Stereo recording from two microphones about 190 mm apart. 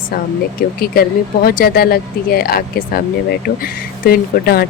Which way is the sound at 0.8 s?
55° left (ahead or behind).